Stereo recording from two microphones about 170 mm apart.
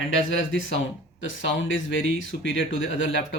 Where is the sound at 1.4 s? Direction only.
90° left.